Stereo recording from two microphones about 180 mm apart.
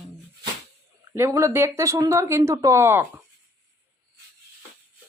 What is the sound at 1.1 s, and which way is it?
Speech, 15° right (ahead or behind).